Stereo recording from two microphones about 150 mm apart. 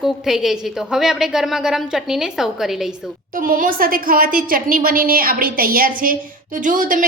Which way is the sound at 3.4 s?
65° right (ahead or behind).